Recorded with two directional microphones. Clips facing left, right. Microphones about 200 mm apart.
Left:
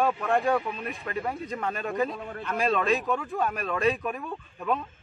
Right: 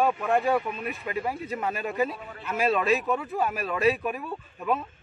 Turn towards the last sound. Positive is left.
turn(degrees=-5)  # may be behind; listen again after turning